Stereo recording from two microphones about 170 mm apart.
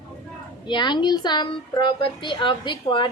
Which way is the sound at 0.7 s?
25° left (ahead or behind).